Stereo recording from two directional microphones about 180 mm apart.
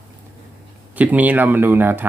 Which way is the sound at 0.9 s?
10° right (ahead or behind).